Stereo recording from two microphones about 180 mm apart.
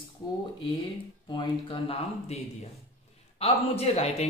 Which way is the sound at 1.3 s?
30° left (ahead or behind).